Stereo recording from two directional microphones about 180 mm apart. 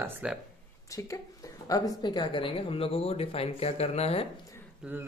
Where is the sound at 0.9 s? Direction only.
20° left (ahead or behind); by 4.3 s 35° left (ahead or behind).